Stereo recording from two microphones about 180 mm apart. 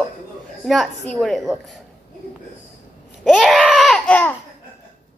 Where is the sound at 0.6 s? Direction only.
Centre (ahead or behind).